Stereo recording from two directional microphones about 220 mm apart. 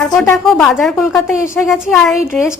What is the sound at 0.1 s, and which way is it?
Speech, centre (ahead or behind).